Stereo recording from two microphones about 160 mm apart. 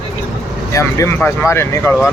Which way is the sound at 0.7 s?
20° left (ahead or behind).